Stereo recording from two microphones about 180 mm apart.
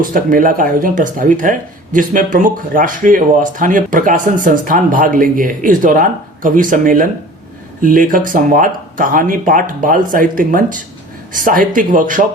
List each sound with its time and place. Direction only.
0.0 s speech: 50° right (ahead or behind)